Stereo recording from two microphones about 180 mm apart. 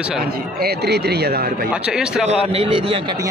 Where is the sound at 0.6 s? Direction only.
65° right (ahead or behind).